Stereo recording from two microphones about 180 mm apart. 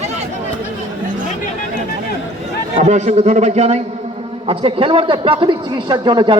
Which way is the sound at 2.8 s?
40° right (ahead or behind).